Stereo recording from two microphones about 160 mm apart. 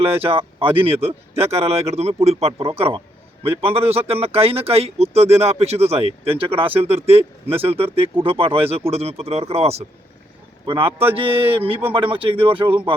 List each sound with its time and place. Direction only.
0.1 s speech: 35° right (ahead or behind)